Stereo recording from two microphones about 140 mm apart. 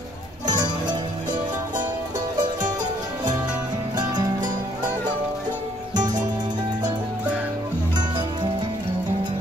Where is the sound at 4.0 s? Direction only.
30° right (ahead or behind).